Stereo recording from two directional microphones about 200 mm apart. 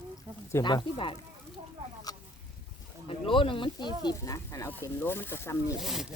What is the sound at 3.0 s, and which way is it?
Speech, 25° left (ahead or behind).